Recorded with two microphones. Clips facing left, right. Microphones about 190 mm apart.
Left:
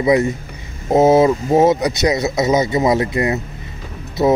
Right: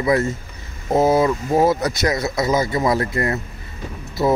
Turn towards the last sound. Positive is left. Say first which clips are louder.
# left 4 dB
turn(degrees=20)  # may be behind; listen again after turning